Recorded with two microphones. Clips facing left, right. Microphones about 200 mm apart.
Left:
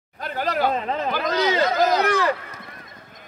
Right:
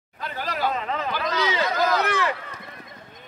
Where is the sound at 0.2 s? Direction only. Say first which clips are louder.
Left 4 dB; 50° left (ahead or behind).